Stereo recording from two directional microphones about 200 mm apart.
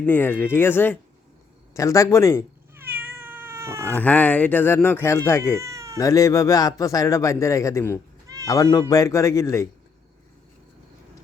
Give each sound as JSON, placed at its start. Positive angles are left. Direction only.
{"t": 0.0, "sound": "a man's voice", "side_deg": 10}
{"t": 2.7, "sound": "cat", "side_deg": -10}
{"t": 3.9, "sound": "a man's voice", "side_deg": 10}
{"t": 5.5, "sound": "cat", "side_deg": -15}
{"t": 6.0, "sound": "a man's voice", "side_deg": 15}